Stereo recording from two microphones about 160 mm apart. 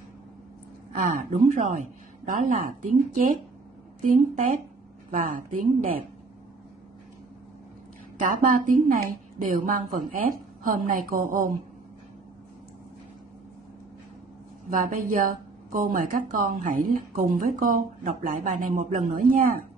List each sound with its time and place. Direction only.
0.9 s a woman's voice: 55° right (ahead or behind)
8.2 s a woman's voice: 60° right (ahead or behind)
14.7 s a woman's voice: 60° right (ahead or behind)